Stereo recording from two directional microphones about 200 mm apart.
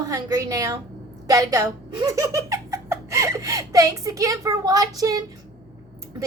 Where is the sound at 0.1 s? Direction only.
15° right (ahead or behind).